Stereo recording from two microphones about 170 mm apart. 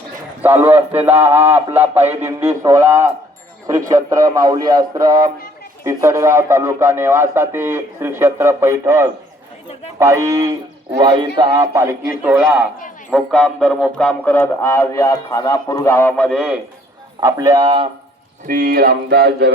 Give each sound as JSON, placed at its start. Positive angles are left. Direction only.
{"t": 0.4, "sound": "speech", "side_deg": -10}
{"t": 17.2, "sound": "speech", "side_deg": -20}
{"t": 18.4, "sound": "speech", "side_deg": -55}